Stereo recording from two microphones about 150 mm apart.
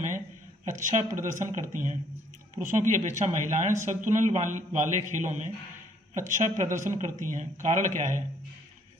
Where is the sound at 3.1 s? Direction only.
55° right (ahead or behind).